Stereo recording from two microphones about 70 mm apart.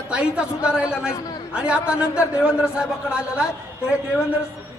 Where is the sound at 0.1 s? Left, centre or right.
Centre.